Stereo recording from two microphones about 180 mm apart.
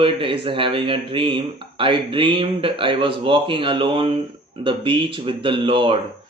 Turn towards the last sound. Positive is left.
turn(degrees=-30)  # may be behind; listen again after turning